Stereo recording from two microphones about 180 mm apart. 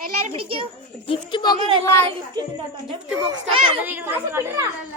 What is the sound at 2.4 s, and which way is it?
A child's voice, 20° right (ahead or behind).